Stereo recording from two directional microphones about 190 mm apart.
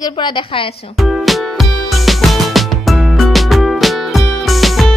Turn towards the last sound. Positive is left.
turn(degrees=0)  # may be behind; listen again after turning